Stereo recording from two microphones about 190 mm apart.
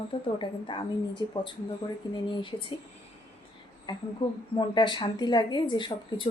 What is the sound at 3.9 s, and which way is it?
A woman's voice, 25° left (ahead or behind).